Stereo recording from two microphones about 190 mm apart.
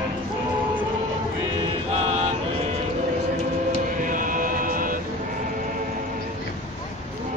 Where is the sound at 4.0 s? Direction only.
45° right (ahead or behind).